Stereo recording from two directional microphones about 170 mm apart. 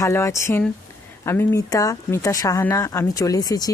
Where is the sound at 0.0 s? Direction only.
15° left (ahead or behind).